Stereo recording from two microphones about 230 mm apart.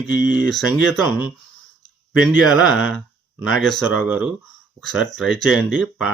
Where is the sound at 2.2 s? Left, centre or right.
Centre.